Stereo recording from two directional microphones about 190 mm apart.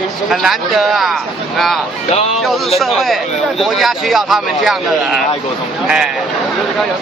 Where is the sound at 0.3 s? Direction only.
Centre (ahead or behind).